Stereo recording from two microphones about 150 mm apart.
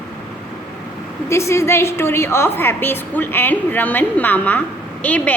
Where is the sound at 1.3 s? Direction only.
20° left (ahead or behind).